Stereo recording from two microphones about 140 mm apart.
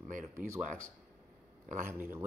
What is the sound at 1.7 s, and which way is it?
Speech, 65° right (ahead or behind).